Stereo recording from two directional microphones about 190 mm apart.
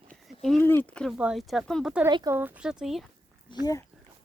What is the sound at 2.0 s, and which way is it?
Speech, 20° right (ahead or behind).